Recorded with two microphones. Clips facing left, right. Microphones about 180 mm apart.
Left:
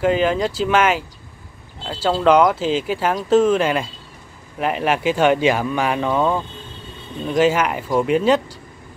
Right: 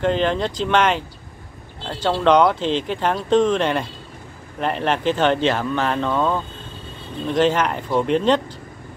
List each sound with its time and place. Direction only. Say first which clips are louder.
0.0 s speech: left 2 dB; 5° left (ahead or behind)